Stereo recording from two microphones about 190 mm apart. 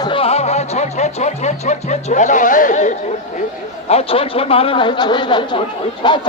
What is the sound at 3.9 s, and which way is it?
Speech, 30° left (ahead or behind).